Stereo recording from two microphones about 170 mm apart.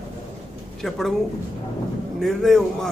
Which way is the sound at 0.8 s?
Centre (ahead or behind).